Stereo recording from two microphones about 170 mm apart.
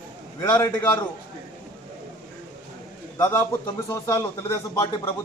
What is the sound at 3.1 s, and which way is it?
Speech, 15° left (ahead or behind).